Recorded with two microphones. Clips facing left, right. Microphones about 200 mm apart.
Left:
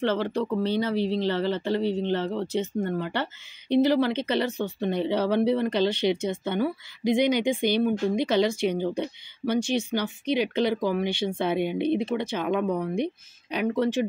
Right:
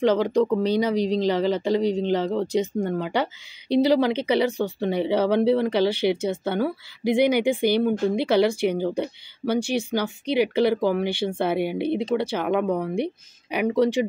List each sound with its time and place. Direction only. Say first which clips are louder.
0.0 s speech: right 6 dB; 15° right (ahead or behind)
12.4 s speech: right 2 dB; 60° right (ahead or behind)
12.9 s speech: right 2 dB; 10° right (ahead or behind)